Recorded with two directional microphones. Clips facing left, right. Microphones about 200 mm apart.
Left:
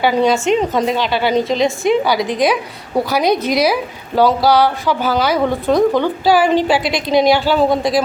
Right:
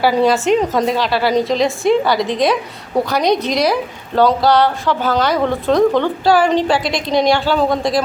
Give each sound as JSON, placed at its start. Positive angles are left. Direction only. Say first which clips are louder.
{"t": 0.0, "sound": "a woman's voice", "louder": "even", "side_deg": 0}